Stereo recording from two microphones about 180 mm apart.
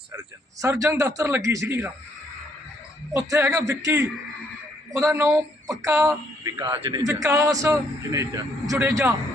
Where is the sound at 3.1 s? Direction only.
20° right (ahead or behind).